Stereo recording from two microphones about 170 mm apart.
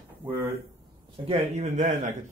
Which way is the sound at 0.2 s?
10° right (ahead or behind).